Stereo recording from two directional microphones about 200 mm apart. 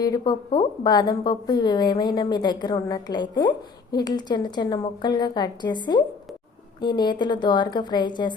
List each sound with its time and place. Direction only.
0.0 s speech: 20° left (ahead or behind)